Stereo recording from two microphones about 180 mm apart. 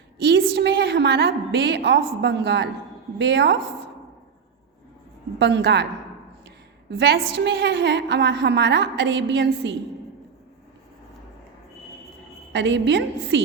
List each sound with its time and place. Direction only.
0.2 s a woman's voice: 70° right (ahead or behind)
5.4 s a woman's voice: 75° right (ahead or behind)
7.0 s a woman's voice: 70° right (ahead or behind)
12.5 s a woman's voice: 75° right (ahead or behind)